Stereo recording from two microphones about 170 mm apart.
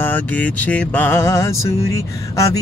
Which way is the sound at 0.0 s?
10° left (ahead or behind).